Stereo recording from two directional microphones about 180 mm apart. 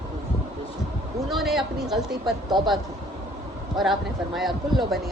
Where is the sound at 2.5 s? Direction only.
25° right (ahead or behind).